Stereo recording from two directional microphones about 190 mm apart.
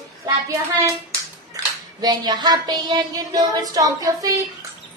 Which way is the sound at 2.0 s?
20° right (ahead or behind).